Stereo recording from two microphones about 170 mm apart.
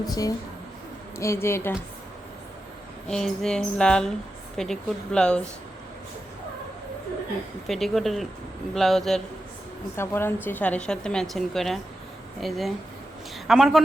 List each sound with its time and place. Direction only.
0.0 s speech: 20° left (ahead or behind)
3.1 s a woman's voice: 5° left (ahead or behind)
7.7 s a woman's voice: centre (ahead or behind)
9.9 s a woman's voice: 15° left (ahead or behind); by 13.8 s centre (ahead or behind)